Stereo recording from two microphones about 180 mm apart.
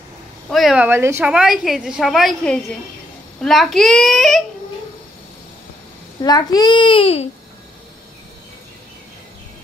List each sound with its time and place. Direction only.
0.5 s a woman's voice: centre (ahead or behind)
6.2 s a child's voice: 20° left (ahead or behind)